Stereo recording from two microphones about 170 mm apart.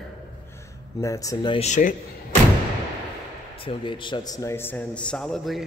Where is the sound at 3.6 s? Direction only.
30° left (ahead or behind); by 5.6 s centre (ahead or behind).